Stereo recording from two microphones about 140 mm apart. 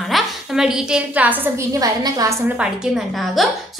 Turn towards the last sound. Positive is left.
turn(degrees=-5)  # may be behind; listen again after turning